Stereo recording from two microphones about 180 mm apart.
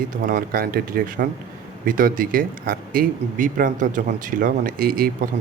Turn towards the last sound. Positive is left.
turn(degrees=-55)  # may be behind; listen again after turning